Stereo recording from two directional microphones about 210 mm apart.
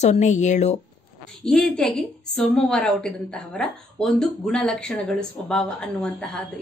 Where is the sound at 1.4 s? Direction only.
5° left (ahead or behind).